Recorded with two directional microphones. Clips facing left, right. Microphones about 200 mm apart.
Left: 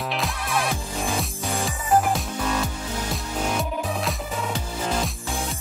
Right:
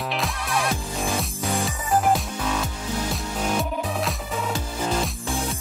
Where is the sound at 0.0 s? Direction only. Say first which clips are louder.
Even; centre (ahead or behind).